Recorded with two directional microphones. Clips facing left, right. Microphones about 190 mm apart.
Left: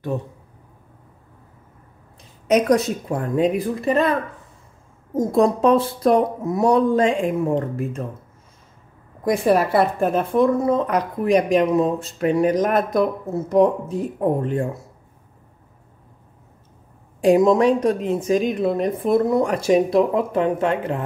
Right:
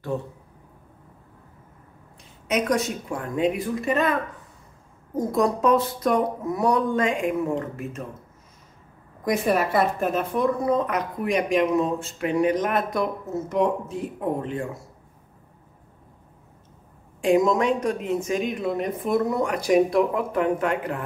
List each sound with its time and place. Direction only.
2.4 s a woman's voice: 35° left (ahead or behind)
5.3 s a woman's voice: 30° left (ahead or behind)
9.2 s a woman's voice: 30° left (ahead or behind)
17.2 s a woman's voice: 35° left (ahead or behind)